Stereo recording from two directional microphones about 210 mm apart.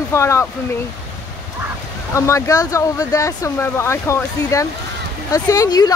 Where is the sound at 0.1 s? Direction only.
15° left (ahead or behind).